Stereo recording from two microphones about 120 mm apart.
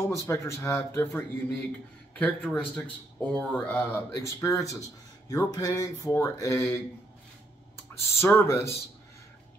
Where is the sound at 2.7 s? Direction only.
10° left (ahead or behind).